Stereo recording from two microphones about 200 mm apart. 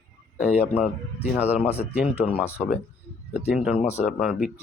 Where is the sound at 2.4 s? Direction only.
10° left (ahead or behind).